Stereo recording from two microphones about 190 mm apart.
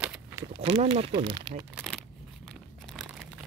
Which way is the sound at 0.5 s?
30° right (ahead or behind).